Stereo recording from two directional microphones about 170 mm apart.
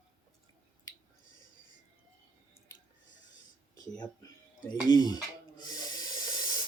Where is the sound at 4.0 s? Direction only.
25° left (ahead or behind).